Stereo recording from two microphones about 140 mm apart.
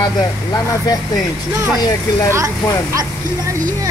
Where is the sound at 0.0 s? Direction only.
25° left (ahead or behind).